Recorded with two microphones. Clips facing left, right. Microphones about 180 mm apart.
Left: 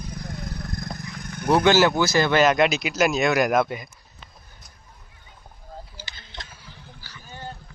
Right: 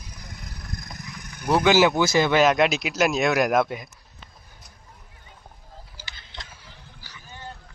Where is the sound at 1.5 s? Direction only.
Centre (ahead or behind).